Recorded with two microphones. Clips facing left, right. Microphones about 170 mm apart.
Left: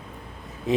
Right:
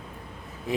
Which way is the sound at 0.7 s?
20° left (ahead or behind).